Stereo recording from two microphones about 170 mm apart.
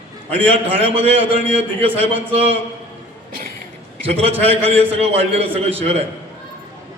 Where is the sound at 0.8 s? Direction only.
35° right (ahead or behind).